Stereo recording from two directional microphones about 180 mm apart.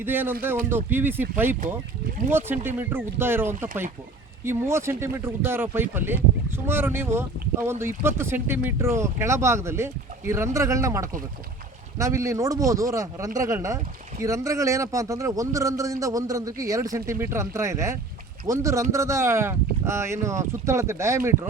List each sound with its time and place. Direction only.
0.0 s a man's voice: 10° right (ahead or behind)
2.6 s a man's voice: 10° right (ahead or behind)